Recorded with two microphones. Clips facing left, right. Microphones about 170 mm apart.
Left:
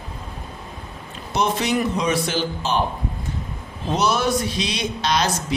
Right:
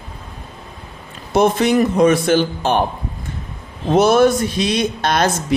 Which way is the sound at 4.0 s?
50° right (ahead or behind).